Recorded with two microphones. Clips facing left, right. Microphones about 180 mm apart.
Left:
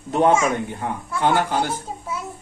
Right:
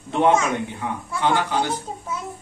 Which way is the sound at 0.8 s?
45° left (ahead or behind).